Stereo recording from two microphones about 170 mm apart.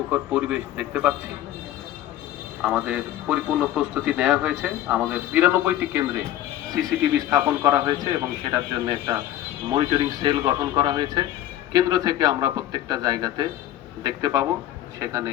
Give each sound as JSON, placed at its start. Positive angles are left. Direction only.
{"t": 0.1, "sound": "speech", "side_deg": -10}
{"t": 2.6, "sound": "a man's voice", "side_deg": -5}